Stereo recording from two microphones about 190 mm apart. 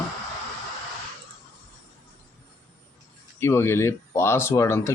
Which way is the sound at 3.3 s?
15° left (ahead or behind).